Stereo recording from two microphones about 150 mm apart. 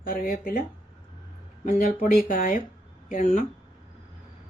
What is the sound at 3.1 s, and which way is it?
Speech, 55° left (ahead or behind).